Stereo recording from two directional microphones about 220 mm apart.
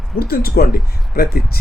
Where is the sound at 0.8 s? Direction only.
Centre (ahead or behind).